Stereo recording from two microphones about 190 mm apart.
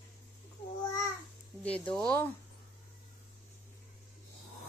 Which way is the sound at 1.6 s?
5° left (ahead or behind).